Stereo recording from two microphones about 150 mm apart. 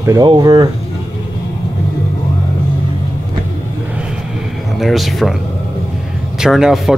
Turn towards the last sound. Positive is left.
turn(degrees=0)  # may be behind; listen again after turning